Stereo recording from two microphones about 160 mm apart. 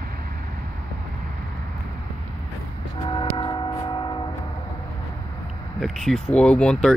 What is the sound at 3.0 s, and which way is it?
Train, 30° left (ahead or behind).